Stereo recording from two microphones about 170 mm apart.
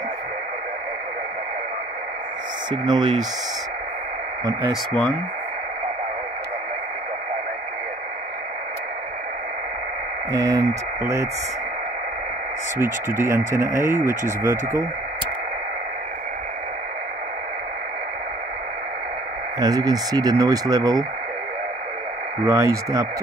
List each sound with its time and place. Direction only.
2.7 s speech: 25° right (ahead or behind)
10.3 s speech: 20° right (ahead or behind)
12.7 s speech: 15° right (ahead or behind)
19.6 s speech: 20° right (ahead or behind)
22.4 s speech: 20° right (ahead or behind)